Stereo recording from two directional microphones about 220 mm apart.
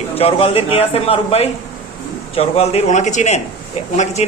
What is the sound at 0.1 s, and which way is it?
Speech, 25° left (ahead or behind).